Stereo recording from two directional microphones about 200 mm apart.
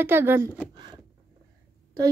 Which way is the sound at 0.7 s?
20° right (ahead or behind).